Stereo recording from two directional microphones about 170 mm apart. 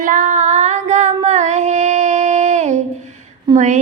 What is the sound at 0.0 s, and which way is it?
Female singing, 50° right (ahead or behind).